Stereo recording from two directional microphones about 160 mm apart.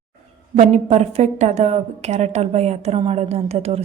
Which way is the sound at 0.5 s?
45° right (ahead or behind).